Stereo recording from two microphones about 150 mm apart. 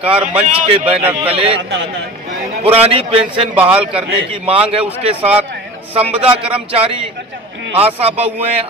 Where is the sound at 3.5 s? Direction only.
10° right (ahead or behind).